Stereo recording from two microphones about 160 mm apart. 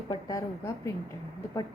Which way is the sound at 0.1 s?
25° left (ahead or behind).